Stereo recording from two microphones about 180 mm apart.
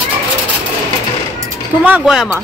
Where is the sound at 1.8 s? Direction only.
5° right (ahead or behind).